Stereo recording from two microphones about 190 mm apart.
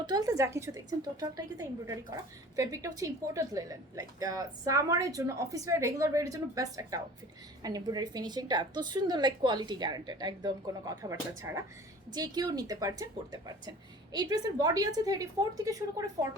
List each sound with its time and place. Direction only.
0.0 s a woman's voice: 20° right (ahead or behind)